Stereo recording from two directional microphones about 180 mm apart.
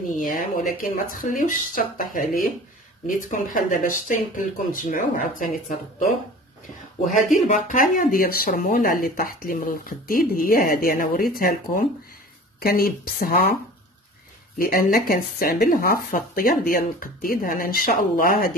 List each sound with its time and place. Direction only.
0.1 s speech: 50° left (ahead or behind)
7.3 s speech: 45° left (ahead or behind)
14.6 s speech: 55° left (ahead or behind)